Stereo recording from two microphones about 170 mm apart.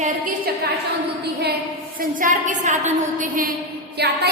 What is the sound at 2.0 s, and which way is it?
A woman's voice, 50° right (ahead or behind).